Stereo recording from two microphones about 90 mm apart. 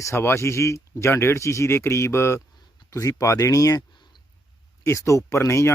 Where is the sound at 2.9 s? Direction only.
40° left (ahead or behind).